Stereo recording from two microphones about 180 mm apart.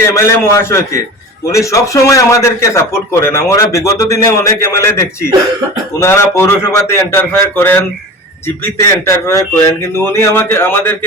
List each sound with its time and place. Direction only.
0.0 s a man's voice: 15° left (ahead or behind)